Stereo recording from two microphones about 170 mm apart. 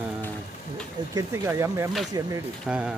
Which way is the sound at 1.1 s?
20° right (ahead or behind).